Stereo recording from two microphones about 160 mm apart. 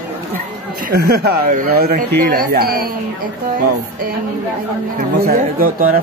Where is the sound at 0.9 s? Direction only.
80° right.